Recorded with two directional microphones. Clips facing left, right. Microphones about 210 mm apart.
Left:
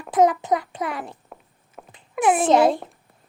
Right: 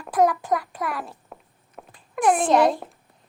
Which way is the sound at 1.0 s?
Centre (ahead or behind).